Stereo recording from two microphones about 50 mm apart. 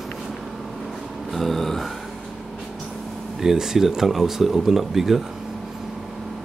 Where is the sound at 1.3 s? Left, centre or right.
Centre.